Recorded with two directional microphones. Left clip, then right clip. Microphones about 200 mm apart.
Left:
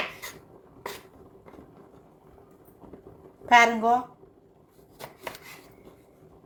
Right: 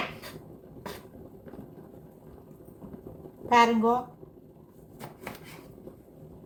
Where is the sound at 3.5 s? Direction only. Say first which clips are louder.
Left 3 dB; 60° left (ahead or behind).